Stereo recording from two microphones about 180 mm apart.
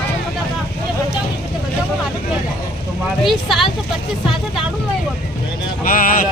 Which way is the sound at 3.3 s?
Centre (ahead or behind).